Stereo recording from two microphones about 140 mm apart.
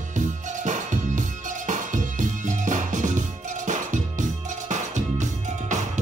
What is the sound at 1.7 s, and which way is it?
Music, 65° right (ahead or behind).